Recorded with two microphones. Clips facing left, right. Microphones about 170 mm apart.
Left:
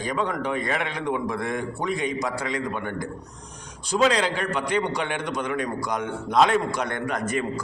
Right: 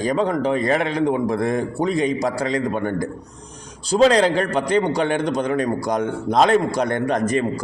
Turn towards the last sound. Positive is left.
turn(degrees=-35)  # may be behind; listen again after turning